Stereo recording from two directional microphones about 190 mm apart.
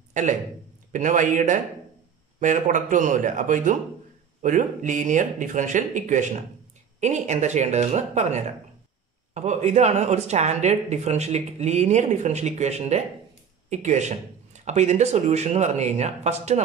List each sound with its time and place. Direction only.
0.1 s speech: 40° right (ahead or behind)